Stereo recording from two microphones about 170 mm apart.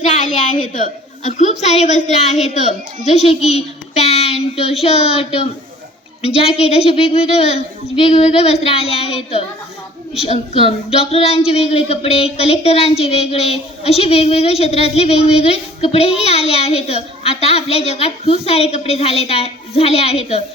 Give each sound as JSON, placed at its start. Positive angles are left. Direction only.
{"t": 0.0, "sound": "a woman's voice", "side_deg": 45}
{"t": 10.2, "sound": "speech", "side_deg": 35}